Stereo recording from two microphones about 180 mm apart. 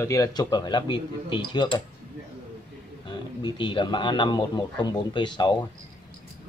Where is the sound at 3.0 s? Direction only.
25° left (ahead or behind).